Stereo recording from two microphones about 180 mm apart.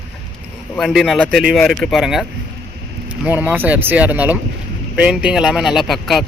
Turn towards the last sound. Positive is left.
turn(degrees=0)  # may be behind; listen again after turning